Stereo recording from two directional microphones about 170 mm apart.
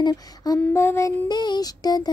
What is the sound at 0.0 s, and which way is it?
Child singing, 20° left (ahead or behind).